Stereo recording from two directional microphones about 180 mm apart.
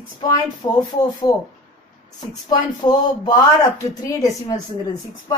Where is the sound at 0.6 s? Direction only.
20° left (ahead or behind).